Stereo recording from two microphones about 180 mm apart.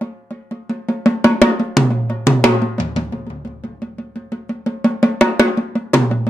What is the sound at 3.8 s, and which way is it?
Drum, 10° left (ahead or behind).